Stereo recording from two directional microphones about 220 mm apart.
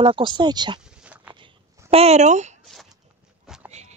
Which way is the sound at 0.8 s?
5° right (ahead or behind).